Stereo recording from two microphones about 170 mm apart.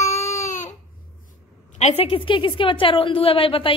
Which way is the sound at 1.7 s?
40° left (ahead or behind).